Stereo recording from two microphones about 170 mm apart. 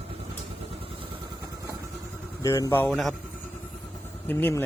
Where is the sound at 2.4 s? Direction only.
20° left (ahead or behind).